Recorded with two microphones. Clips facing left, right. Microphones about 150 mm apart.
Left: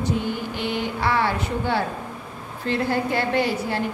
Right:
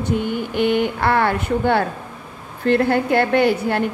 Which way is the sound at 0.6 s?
60° right (ahead or behind).